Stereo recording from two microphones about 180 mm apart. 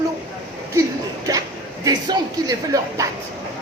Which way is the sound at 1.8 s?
20° right (ahead or behind).